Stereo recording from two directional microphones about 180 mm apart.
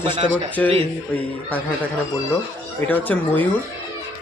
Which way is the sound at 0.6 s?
10° left (ahead or behind).